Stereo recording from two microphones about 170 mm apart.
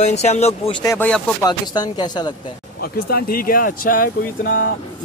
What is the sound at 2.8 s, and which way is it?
Speech, 65° left (ahead or behind).